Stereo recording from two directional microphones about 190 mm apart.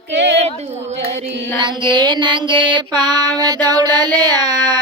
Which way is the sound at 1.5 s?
25° right (ahead or behind).